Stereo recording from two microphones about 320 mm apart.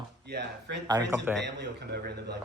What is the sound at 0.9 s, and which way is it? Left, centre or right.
Speech, centre.